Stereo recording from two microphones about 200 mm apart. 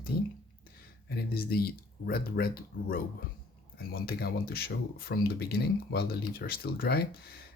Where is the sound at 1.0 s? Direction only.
50° left (ahead or behind).